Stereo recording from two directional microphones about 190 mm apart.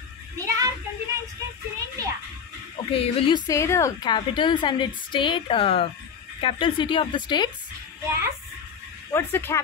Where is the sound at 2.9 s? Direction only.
30° left (ahead or behind).